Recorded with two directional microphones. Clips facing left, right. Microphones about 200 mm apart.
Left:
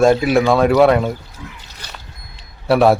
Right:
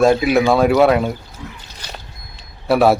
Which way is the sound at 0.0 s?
Centre (ahead or behind).